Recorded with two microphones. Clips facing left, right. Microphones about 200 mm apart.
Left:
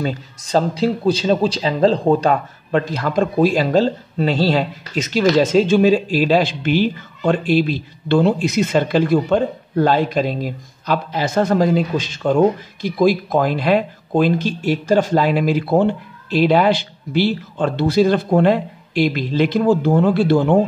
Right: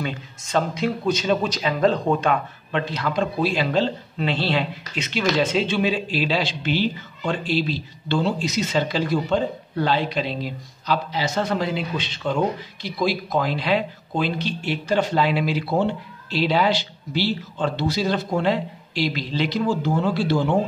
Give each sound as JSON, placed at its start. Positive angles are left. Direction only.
{"t": 0.0, "sound": "a man's voice", "side_deg": 35}